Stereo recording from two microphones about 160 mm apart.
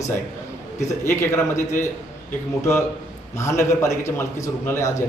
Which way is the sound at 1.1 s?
15° left (ahead or behind).